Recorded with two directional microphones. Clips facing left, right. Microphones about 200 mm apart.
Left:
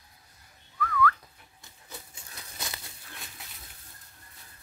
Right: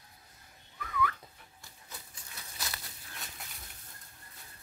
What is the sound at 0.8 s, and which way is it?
Whistling, 20° right (ahead or behind).